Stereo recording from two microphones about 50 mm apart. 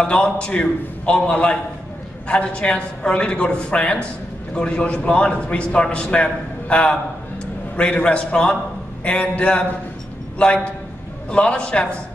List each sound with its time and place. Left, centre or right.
0.0 s a man's voice: left